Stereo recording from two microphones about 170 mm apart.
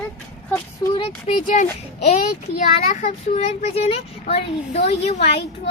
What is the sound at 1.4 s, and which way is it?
Speech, 50° left (ahead or behind).